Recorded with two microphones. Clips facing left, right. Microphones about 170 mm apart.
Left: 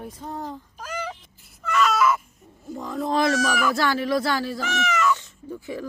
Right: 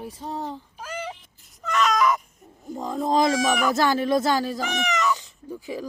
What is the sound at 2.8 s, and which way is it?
Speech, 20° right (ahead or behind).